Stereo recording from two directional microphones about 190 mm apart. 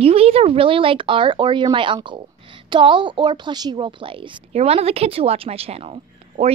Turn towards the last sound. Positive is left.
turn(degrees=-30)  # may be behind; listen again after turning